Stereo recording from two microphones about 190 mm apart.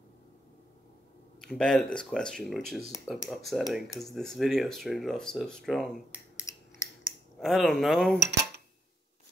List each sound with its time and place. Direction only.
1.4 s speech: centre (ahead or behind)
6.5 s scissors: 15° left (ahead or behind)
7.3 s speech: centre (ahead or behind)